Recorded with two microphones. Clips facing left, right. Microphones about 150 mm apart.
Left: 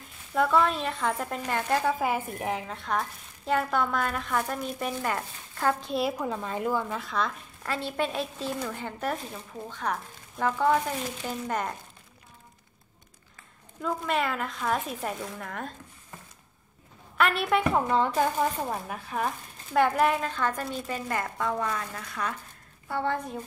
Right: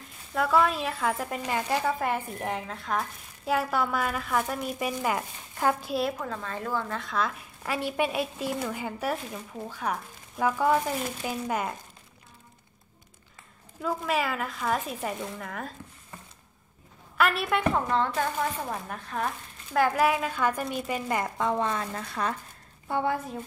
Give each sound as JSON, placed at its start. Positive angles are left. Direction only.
{"t": 0.3, "sound": "speech", "side_deg": 0}
{"t": 1.9, "sound": "speech", "side_deg": 5}
{"t": 6.1, "sound": "speech", "side_deg": 15}
{"t": 7.6, "sound": "speech", "side_deg": -10}
{"t": 13.7, "sound": "speech", "side_deg": -5}
{"t": 17.2, "sound": "speech", "side_deg": 0}
{"t": 22.8, "sound": "speech", "side_deg": -15}
{"t": 23.1, "sound": "speech", "side_deg": -5}